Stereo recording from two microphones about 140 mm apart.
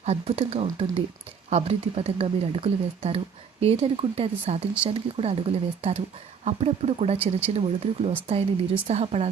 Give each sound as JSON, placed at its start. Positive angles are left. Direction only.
{"t": 0.0, "sound": "speech", "side_deg": -45}